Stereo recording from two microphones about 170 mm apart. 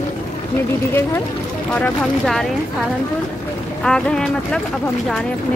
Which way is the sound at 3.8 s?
5° left (ahead or behind).